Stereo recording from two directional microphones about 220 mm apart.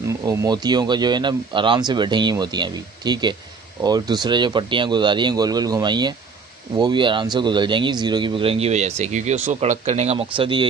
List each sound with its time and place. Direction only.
0.3 s speech: 15° right (ahead or behind)